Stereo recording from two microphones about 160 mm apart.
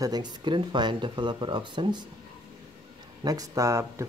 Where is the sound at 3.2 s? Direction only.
20° right (ahead or behind).